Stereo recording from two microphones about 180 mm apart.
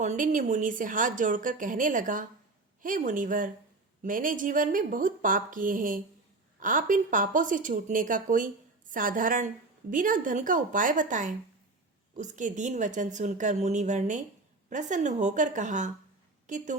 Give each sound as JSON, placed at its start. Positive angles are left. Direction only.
{"t": 0.0, "sound": "a woman's voice", "side_deg": -45}